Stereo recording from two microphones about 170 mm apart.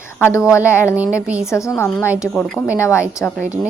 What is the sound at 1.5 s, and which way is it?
Speech, 15° left (ahead or behind).